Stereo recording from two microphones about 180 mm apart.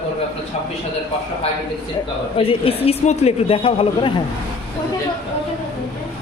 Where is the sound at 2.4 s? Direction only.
30° left (ahead or behind).